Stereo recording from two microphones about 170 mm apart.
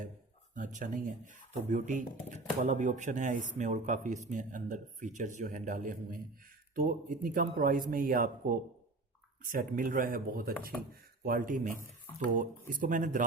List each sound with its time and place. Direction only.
0.5 s speech: 50° right (ahead or behind)